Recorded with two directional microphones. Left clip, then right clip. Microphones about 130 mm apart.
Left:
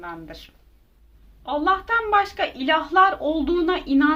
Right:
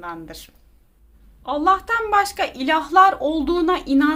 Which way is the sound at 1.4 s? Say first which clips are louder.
Right 3 dB; 40° right (ahead or behind).